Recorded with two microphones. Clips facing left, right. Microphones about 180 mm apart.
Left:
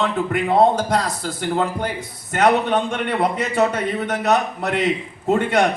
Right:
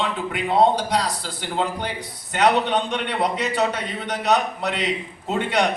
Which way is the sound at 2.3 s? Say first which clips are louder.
Left 2 dB; 50° left (ahead or behind).